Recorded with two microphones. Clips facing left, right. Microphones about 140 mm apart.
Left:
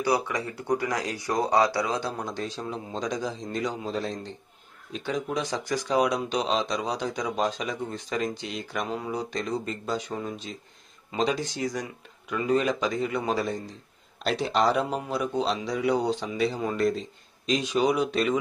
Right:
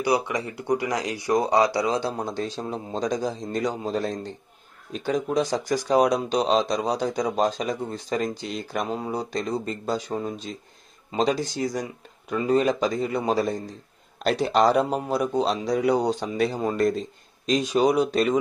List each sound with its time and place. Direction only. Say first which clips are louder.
0.0 s speech: right 2 dB; 15° right (ahead or behind)
2.0 s a man's voice: right 4 dB; 30° right (ahead or behind)